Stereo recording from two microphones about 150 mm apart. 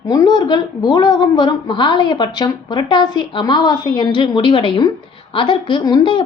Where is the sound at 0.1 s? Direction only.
25° left (ahead or behind).